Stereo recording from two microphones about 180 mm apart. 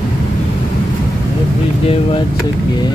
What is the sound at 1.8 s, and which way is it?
Speech, 30° left (ahead or behind).